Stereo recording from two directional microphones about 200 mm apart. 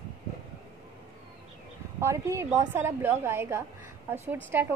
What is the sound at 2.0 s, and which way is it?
Speech, 15° right (ahead or behind).